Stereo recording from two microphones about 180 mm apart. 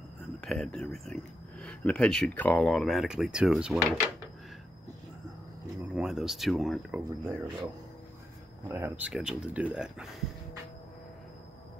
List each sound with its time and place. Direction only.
0.4 s speech: 5° left (ahead or behind)
5.9 s speech: 5° right (ahead or behind)
7.1 s speech: 15° right (ahead or behind)
8.6 s speech: 15° right (ahead or behind)